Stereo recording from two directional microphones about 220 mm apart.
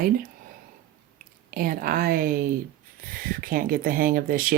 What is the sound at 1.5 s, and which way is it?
Speech, 40° right (ahead or behind).